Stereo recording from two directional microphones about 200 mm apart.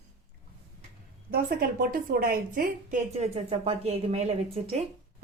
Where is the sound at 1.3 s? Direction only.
50° right (ahead or behind); by 4.7 s 30° right (ahead or behind).